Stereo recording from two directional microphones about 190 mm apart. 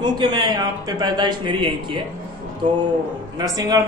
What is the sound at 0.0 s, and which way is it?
A man's voice, 25° right (ahead or behind).